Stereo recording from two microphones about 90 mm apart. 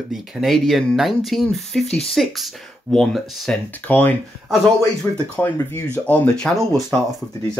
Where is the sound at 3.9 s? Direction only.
20° left (ahead or behind).